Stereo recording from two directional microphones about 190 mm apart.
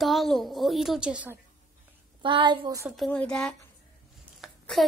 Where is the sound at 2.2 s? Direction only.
25° right (ahead or behind).